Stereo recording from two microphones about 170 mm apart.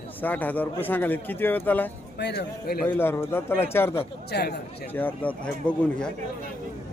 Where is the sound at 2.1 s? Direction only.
75° left (ahead or behind).